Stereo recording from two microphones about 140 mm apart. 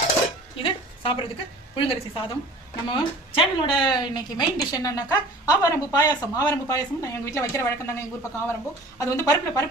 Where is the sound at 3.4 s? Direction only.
35° left (ahead or behind).